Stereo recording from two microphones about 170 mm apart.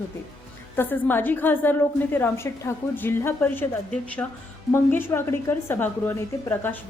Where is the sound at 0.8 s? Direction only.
10° left (ahead or behind).